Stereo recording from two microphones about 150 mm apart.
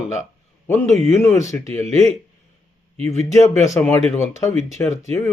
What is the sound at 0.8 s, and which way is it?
Speech, 50° right (ahead or behind).